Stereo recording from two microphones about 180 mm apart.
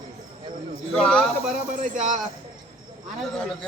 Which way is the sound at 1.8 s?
45° right (ahead or behind).